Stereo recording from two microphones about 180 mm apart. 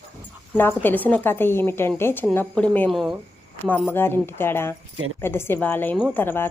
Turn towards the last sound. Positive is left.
turn(degrees=10)  # may be behind; listen again after turning